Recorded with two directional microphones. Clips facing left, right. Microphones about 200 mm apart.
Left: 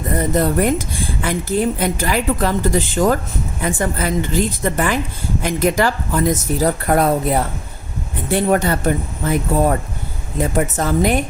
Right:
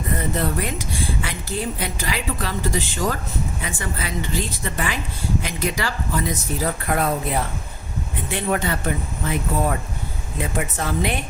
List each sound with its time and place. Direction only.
0.2 s speech: 45° left (ahead or behind)